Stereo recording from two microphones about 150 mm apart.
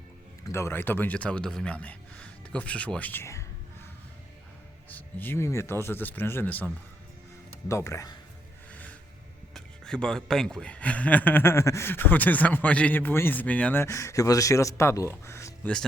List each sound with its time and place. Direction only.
0.4 s speech: 20° left (ahead or behind)
4.9 s speech: 10° left (ahead or behind)
8.7 s music: 10° left (ahead or behind)
9.6 s speech: 5° left (ahead or behind)
15.6 s speech: 5° left (ahead or behind)